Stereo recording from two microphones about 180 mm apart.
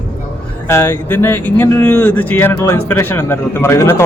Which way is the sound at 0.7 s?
15° left (ahead or behind).